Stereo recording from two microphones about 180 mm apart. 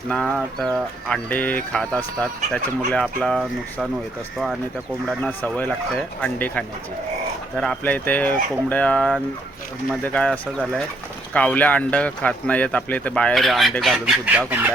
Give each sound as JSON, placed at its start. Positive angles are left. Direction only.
{"t": 0.1, "sound": "speech", "side_deg": 5}
{"t": 5.0, "sound": "speech", "side_deg": 10}